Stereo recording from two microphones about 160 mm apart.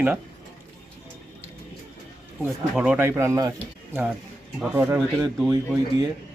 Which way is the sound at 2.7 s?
5° right (ahead or behind).